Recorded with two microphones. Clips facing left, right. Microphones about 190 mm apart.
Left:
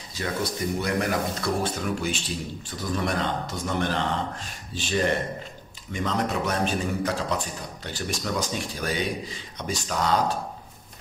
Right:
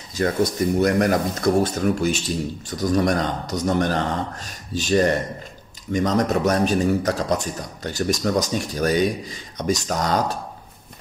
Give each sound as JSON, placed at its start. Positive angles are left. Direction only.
{"t": 0.2, "sound": "a man's voice", "side_deg": -45}